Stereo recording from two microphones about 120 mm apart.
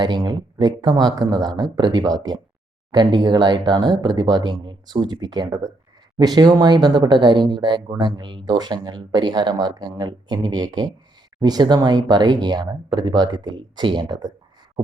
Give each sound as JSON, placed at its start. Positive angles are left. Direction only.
{"t": 0.0, "sound": "speech", "side_deg": -35}